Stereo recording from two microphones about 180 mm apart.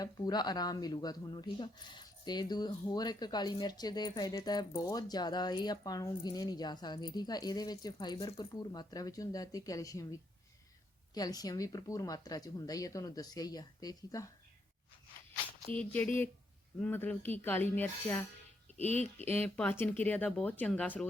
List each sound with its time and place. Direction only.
0.0 s speech: 20° left (ahead or behind)
15.8 s speech: 10° left (ahead or behind)
18.8 s speech: 40° left (ahead or behind)
19.3 s speech: 10° left (ahead or behind)